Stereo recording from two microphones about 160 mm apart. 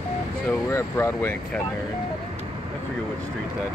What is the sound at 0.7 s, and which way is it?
Speech, 15° left (ahead or behind).